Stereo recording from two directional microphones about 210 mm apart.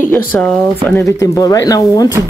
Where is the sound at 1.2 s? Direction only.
15° left (ahead or behind).